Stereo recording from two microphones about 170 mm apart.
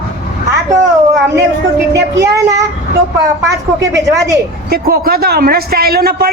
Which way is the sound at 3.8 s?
20° right (ahead or behind).